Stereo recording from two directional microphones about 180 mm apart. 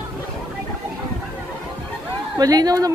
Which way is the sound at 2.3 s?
20° right (ahead or behind).